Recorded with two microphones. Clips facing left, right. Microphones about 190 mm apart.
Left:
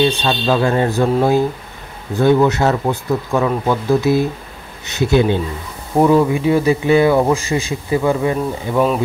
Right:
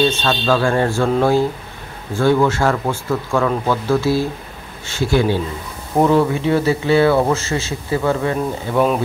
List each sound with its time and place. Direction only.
0.0 s speech: 15° left (ahead or behind)
2.1 s speech: 20° left (ahead or behind)
5.9 s speech: 10° left (ahead or behind)
8.7 s speech: centre (ahead or behind)